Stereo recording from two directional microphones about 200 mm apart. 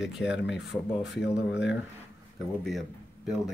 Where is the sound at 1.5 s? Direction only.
60° left (ahead or behind).